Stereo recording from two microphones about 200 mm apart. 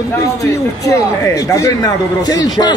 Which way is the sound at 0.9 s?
15° left (ahead or behind).